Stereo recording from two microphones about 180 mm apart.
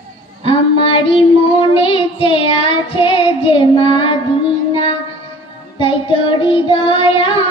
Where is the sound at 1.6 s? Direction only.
30° left (ahead or behind).